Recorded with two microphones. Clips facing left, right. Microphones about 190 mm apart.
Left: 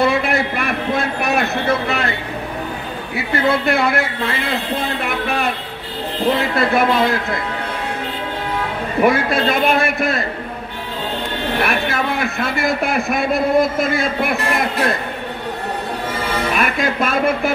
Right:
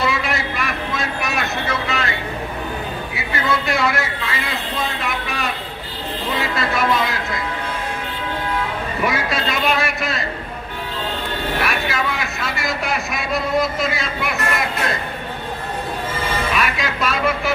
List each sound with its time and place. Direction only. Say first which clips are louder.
0.0 s a sound: left 5 dB; 55° left (ahead or behind)
3.4 s speech: left 3 dB; 55° left (ahead or behind)
9.0 s speech: left 7 dB; 55° left (ahead or behind)
11.6 s a man's voice: left 5 dB; 55° left (ahead or behind)
16.5 s speech: left 3 dB; 55° left (ahead or behind)